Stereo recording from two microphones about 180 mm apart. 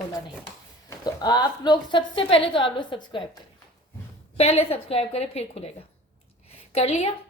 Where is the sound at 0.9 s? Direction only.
20° left (ahead or behind).